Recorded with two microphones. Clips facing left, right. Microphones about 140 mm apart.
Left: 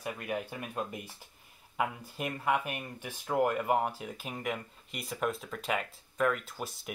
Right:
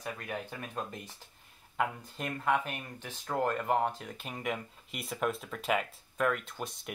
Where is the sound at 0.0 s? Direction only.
10° left (ahead or behind).